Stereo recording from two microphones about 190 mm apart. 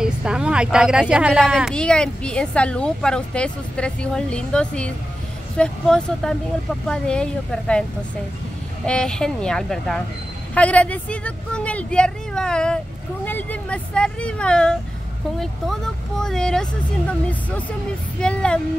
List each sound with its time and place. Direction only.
0.0 s a woman's voice: 5° right (ahead or behind)
8.8 s a woman's voice: 5° left (ahead or behind)